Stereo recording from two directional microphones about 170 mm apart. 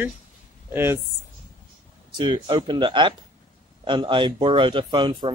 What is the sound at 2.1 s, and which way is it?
Speech, 30° right (ahead or behind).